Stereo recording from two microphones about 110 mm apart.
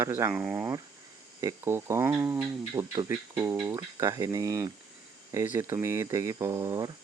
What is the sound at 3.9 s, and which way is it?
Speech, 30° right (ahead or behind).